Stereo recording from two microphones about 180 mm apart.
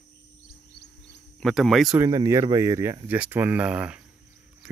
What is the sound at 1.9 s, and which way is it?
A man's voice, 20° right (ahead or behind).